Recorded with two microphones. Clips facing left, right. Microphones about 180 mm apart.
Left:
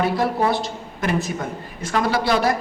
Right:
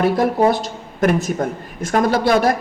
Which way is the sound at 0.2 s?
45° right (ahead or behind).